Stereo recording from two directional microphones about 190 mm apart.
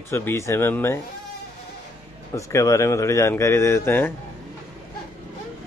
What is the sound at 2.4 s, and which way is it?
Speech, 15° left (ahead or behind).